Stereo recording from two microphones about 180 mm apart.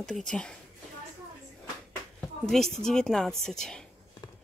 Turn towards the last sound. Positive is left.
turn(degrees=5)  # may be behind; listen again after turning